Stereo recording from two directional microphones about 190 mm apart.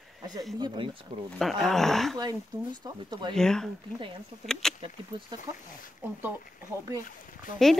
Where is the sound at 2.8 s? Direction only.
20° right (ahead or behind).